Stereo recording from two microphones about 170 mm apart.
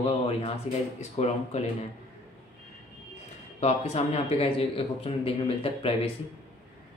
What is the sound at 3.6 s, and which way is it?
Speech, 40° left (ahead or behind).